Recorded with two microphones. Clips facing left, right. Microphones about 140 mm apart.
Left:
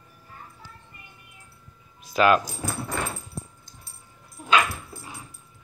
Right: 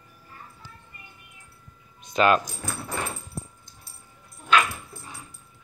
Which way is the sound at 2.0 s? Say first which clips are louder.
Left 1 dB; centre (ahead or behind).